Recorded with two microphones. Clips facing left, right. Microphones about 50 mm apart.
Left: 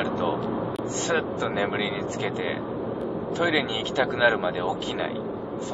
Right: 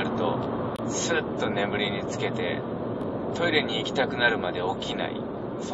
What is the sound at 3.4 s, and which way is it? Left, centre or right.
Speech, centre.